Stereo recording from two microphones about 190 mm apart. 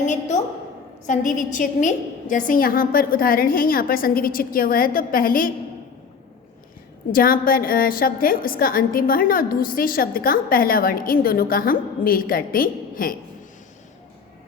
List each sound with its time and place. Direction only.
0.0 s a woman's voice: 40° left (ahead or behind)
7.1 s a woman's voice: 50° left (ahead or behind)